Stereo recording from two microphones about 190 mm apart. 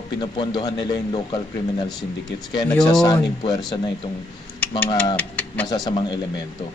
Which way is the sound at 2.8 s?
20° left (ahead or behind).